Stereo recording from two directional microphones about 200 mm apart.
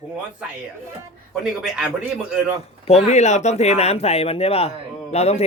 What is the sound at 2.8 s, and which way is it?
Speech, 35° left (ahead or behind).